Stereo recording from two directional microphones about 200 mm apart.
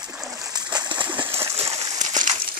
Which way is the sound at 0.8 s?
20° right (ahead or behind).